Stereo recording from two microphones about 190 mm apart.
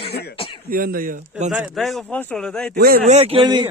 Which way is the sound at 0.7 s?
50° right (ahead or behind).